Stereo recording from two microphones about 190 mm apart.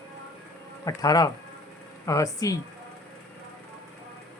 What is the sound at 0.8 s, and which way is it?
Speech, 20° left (ahead or behind).